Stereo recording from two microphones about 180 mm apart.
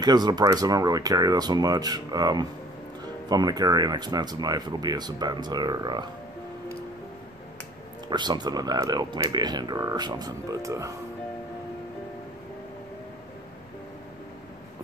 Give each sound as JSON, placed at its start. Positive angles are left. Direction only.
{"t": 0.0, "sound": "speech", "side_deg": -20}
{"t": 8.1, "sound": "speech", "side_deg": -25}